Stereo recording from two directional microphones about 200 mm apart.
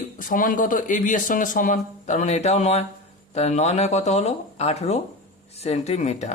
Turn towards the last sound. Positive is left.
turn(degrees=35)  # may be behind; listen again after turning